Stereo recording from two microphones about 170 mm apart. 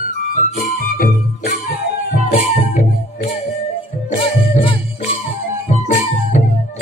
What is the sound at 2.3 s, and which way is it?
Music, 35° left (ahead or behind).